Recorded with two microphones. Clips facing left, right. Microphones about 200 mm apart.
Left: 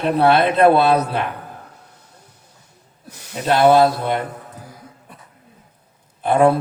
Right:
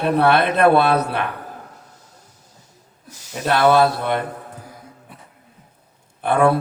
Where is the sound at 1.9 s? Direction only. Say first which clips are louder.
Even; 60° left (ahead or behind).